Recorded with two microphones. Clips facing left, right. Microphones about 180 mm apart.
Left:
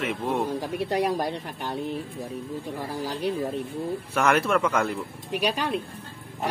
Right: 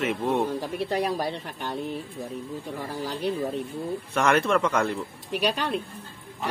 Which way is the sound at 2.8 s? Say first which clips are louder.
Even; 10° left (ahead or behind).